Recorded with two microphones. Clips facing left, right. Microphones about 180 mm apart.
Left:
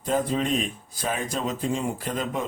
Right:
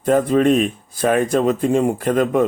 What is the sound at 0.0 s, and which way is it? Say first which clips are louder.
Speech: right 10 dB; 60° right (ahead or behind).